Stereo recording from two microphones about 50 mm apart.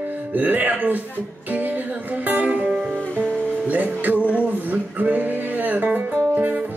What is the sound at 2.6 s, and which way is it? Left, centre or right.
Music, right.